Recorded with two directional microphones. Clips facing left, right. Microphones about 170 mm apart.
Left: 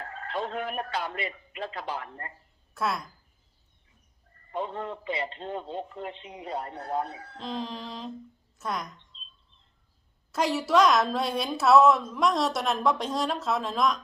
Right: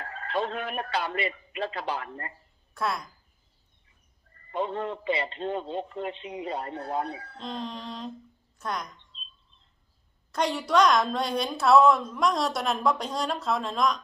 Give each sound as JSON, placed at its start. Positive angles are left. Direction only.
{"t": 0.1, "sound": "speech", "side_deg": -85}
{"t": 2.7, "sound": "a woman's voice", "side_deg": 0}
{"t": 4.5, "sound": "a man's voice", "side_deg": -80}
{"t": 7.3, "sound": "a woman's voice", "side_deg": 0}
{"t": 10.3, "sound": "a woman's voice", "side_deg": 5}